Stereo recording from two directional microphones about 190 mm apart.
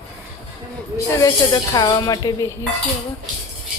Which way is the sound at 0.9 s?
20° left (ahead or behind).